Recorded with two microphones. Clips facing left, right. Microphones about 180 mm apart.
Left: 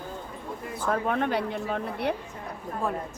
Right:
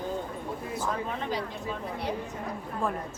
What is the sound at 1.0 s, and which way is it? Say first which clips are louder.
Speech: left 6 dB; 60° left (ahead or behind).